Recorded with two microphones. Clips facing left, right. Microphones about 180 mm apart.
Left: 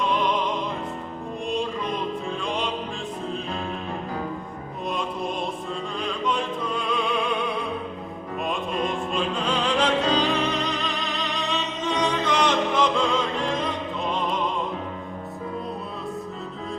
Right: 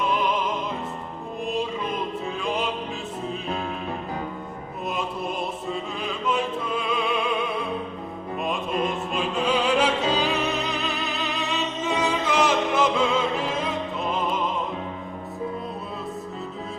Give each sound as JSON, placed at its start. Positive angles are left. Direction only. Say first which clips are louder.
{"t": 0.1, "sound": "music", "louder": "left 1 dB", "side_deg": -5}
{"t": 6.0, "sound": "opera", "louder": "even", "side_deg": -5}
{"t": 8.4, "sound": "music", "louder": "right 1 dB", "side_deg": -5}